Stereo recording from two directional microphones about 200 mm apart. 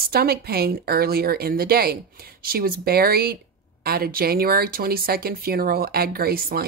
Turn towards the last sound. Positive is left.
turn(degrees=-50)  # may be behind; listen again after turning